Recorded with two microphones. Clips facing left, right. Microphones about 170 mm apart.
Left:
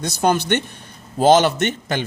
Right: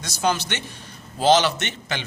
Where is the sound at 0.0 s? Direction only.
55° left (ahead or behind).